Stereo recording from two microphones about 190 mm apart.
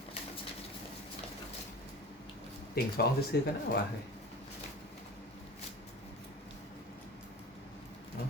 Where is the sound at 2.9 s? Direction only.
55° left (ahead or behind).